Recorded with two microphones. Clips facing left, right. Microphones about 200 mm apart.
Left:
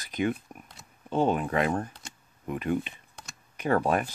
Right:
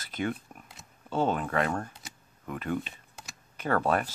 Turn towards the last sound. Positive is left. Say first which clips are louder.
# left 2 dB
turn(degrees=15)  # may be behind; listen again after turning